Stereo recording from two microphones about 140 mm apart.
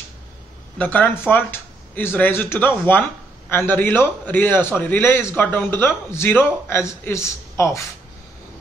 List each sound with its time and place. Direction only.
0.7 s speech: 10° left (ahead or behind)